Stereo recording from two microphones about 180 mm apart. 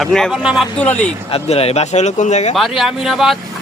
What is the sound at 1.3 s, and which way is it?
Speech, 35° left (ahead or behind).